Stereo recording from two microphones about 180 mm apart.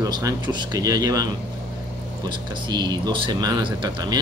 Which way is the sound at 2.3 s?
25° right (ahead or behind).